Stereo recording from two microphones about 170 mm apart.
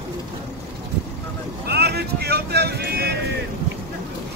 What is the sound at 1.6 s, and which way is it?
Vehicle, 70° right (ahead or behind).